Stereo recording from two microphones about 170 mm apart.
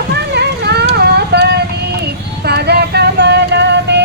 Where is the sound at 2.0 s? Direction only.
70° right (ahead or behind); by 4.0 s 90° right.